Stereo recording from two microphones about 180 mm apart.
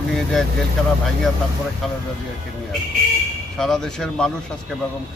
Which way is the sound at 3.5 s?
Centre (ahead or behind).